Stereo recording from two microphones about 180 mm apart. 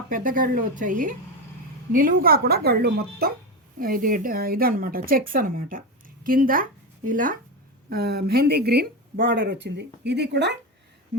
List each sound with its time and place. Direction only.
0.1 s speech: 50° right (ahead or behind)
7.9 s speech: 60° right (ahead or behind)